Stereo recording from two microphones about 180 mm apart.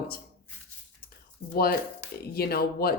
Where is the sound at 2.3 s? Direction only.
55° left (ahead or behind).